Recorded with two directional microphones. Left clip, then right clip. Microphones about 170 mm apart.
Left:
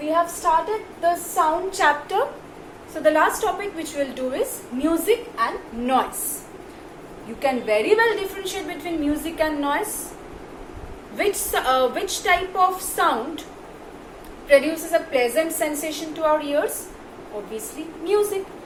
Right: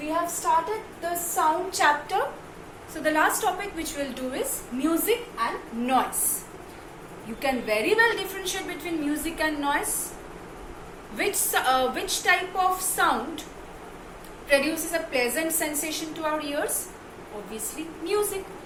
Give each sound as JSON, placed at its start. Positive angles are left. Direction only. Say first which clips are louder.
{"t": 1.4, "sound": "a woman's voice", "louder": "even", "side_deg": -10}
{"t": 7.4, "sound": "a woman's voice", "louder": "left 5 dB", "side_deg": -20}
{"t": 11.2, "sound": "a woman's voice", "louder": "left 3 dB", "side_deg": -15}
{"t": 14.4, "sound": "a woman's voice", "louder": "left 6 dB", "side_deg": -15}
{"t": 18.0, "sound": "a woman's voice", "louder": "left 6 dB", "side_deg": -15}